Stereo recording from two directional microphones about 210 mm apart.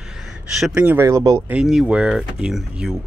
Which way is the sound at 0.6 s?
5° right (ahead or behind).